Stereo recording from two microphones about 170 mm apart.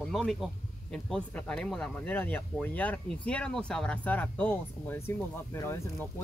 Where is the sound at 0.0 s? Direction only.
Centre (ahead or behind).